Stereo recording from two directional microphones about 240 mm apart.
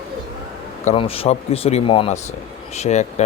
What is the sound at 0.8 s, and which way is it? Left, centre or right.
A man's voice, left.